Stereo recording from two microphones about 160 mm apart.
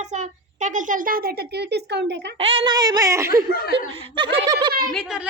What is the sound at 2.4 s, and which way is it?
A woman's voice, 35° right (ahead or behind).